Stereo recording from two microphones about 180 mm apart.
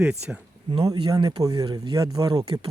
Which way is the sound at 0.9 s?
20° right (ahead or behind).